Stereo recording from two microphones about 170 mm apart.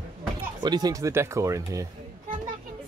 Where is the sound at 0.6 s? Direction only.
25° right (ahead or behind).